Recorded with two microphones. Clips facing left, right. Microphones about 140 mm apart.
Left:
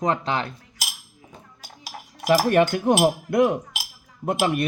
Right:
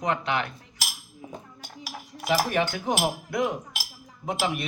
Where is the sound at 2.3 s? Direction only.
55° left (ahead or behind).